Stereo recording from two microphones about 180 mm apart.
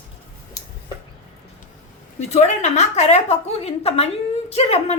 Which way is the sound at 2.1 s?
40° left (ahead or behind).